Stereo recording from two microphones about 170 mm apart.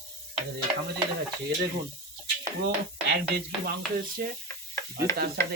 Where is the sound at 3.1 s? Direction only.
65° right (ahead or behind).